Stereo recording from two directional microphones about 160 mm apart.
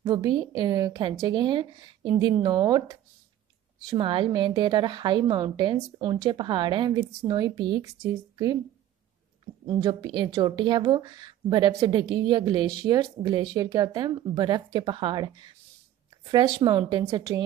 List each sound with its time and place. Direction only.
0.0 s speech: 25° right (ahead or behind)
9.7 s speech: 25° right (ahead or behind)